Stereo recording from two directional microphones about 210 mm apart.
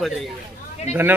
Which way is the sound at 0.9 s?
30° left (ahead or behind).